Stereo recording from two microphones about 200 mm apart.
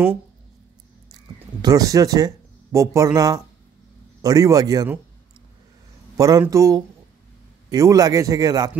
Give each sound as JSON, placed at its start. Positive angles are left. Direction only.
{"t": 1.6, "sound": "speech", "side_deg": -20}
{"t": 6.1, "sound": "speech", "side_deg": -15}